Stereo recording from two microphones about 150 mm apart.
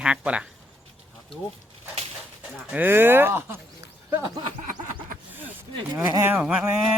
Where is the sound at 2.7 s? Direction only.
15° right (ahead or behind).